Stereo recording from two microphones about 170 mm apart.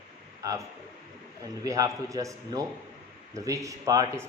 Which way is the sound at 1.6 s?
20° right (ahead or behind).